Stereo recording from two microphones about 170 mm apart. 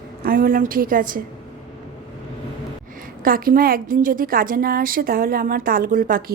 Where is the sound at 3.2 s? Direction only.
55° right (ahead or behind).